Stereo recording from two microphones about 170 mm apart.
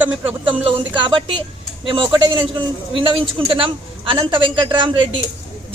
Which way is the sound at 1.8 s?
30° right (ahead or behind).